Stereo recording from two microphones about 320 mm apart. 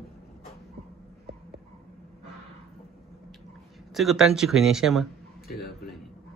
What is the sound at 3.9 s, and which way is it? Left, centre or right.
A man's voice, centre.